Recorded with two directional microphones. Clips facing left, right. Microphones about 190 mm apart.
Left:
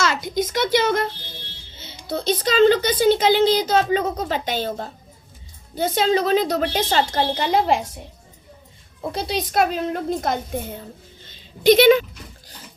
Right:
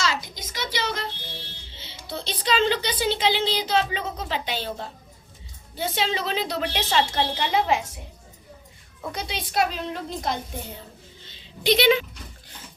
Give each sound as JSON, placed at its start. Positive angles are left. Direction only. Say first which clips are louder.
{"t": 0.0, "sound": "a woman's voice", "louder": "left 7 dB", "side_deg": 50}
{"t": 1.7, "sound": "a sound", "louder": "left 3 dB", "side_deg": 45}
{"t": 2.0, "sound": "a woman's voice", "louder": "left 6 dB", "side_deg": 45}
{"t": 9.0, "sound": "a woman's voice", "louder": "left 7 dB", "side_deg": 35}